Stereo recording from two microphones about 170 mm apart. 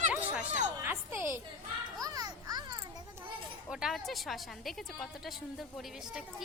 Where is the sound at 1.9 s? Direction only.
20° right (ahead or behind).